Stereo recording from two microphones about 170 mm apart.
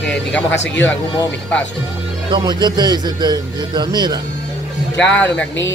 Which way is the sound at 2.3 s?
25° right (ahead or behind).